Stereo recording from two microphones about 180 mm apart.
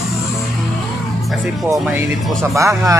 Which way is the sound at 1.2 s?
Centre (ahead or behind).